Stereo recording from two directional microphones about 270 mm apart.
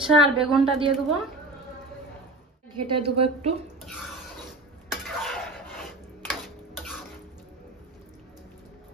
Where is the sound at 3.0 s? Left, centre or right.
Right.